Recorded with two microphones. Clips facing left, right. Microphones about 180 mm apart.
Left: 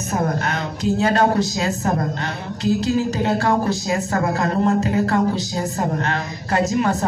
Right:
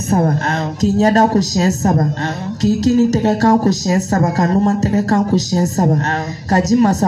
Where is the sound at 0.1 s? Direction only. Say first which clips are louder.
Right 6 dB; 40° right (ahead or behind).